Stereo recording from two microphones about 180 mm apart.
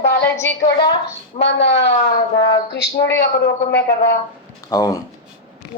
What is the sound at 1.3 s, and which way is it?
A woman's voice, 35° left (ahead or behind).